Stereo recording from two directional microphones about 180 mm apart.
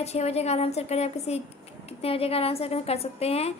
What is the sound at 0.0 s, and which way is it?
A woman's voice, 35° left (ahead or behind).